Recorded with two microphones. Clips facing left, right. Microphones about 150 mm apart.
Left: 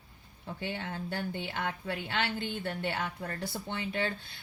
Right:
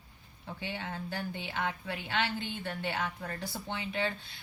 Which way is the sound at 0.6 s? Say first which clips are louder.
Left 2 dB; 50° left (ahead or behind).